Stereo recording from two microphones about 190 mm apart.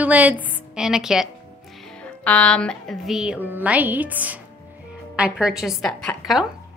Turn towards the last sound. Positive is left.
turn(degrees=0)  # may be behind; listen again after turning